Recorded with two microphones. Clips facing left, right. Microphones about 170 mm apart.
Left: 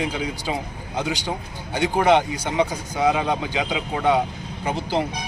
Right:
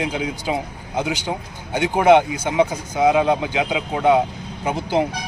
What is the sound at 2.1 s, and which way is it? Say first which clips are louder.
Speech: right 7 dB; 15° right (ahead or behind).